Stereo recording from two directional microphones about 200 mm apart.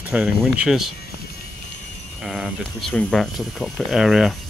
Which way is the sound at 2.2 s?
Centre (ahead or behind).